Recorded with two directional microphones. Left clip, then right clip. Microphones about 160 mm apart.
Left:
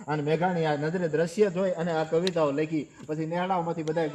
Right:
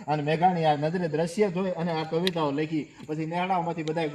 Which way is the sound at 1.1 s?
50° right (ahead or behind).